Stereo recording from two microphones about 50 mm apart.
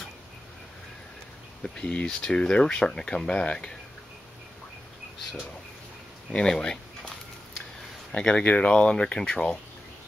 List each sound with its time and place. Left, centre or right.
1.6 s speech: left
2.0 s speech: centre
6.3 s speech: centre
8.1 s speech: left